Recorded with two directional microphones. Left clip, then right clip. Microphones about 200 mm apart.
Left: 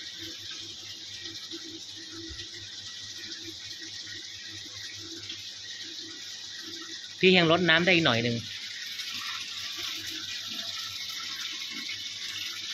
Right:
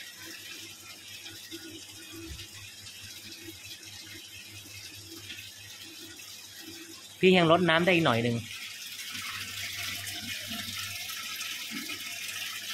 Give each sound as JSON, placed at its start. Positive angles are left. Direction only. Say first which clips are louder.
{"t": 7.2, "sound": "speech", "louder": "even", "side_deg": -20}